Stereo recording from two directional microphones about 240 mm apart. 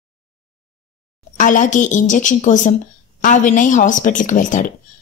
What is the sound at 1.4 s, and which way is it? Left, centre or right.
Speech, left.